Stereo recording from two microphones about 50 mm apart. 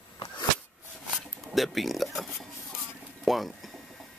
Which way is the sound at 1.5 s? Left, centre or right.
Centre.